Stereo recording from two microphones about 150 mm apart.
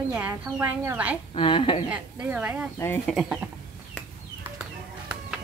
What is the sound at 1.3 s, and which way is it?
Speech, 35° left (ahead or behind).